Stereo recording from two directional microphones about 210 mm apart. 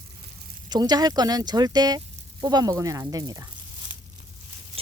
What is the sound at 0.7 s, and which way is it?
Speech, 20° right (ahead or behind).